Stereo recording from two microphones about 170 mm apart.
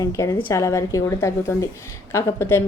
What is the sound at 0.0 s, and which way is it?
A woman's voice, 20° left (ahead or behind).